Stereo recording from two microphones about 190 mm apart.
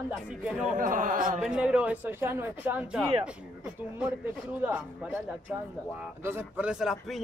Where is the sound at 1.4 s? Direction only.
5° right (ahead or behind).